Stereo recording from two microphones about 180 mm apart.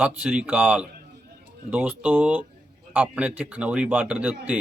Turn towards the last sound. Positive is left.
turn(degrees=-5)  # may be behind; listen again after turning